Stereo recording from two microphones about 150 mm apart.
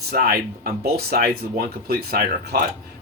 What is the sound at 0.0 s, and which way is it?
Speech, 90° right.